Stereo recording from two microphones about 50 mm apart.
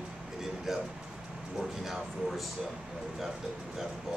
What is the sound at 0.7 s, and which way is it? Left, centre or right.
Speech, centre.